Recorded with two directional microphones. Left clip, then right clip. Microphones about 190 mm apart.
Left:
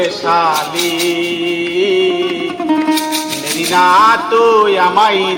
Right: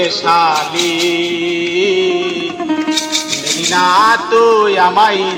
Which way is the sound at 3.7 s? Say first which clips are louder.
Left 2 dB; 30° left (ahead or behind).